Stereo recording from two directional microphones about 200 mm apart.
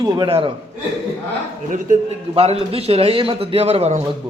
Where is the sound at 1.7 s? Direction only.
40° right (ahead or behind).